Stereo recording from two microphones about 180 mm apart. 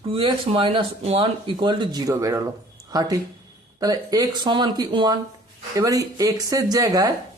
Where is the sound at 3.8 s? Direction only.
20° right (ahead or behind).